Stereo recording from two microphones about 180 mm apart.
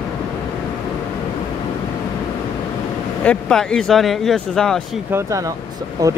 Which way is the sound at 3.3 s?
5° left (ahead or behind).